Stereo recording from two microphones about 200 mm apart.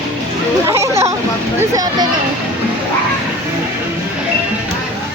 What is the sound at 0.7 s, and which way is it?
Chatter, 15° right (ahead or behind).